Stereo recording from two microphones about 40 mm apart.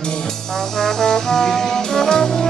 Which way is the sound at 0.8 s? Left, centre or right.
Centre.